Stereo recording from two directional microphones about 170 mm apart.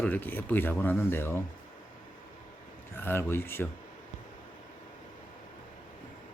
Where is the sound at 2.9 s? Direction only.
15° left (ahead or behind).